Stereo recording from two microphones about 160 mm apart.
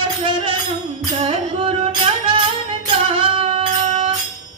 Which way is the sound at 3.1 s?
35° right (ahead or behind).